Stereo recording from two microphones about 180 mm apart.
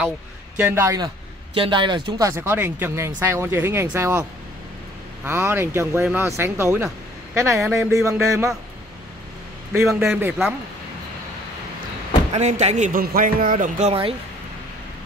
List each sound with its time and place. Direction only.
0.6 s a man's voice: 10° right (ahead or behind)
9.7 s a man's voice: 5° right (ahead or behind)
12.3 s speech: 40° right (ahead or behind)